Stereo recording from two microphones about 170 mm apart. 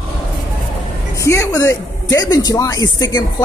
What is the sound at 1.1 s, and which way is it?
A woman's voice, 20° left (ahead or behind).